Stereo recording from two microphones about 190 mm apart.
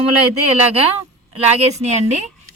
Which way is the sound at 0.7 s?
30° right (ahead or behind).